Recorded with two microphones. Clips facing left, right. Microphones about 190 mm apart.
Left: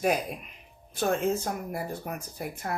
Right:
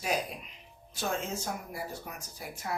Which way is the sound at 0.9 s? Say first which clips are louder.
Left 8 dB; 55° left (ahead or behind).